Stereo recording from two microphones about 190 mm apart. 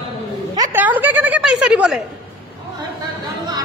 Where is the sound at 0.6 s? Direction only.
10° right (ahead or behind).